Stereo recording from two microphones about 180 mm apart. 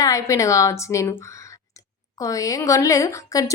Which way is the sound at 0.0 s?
15° left (ahead or behind).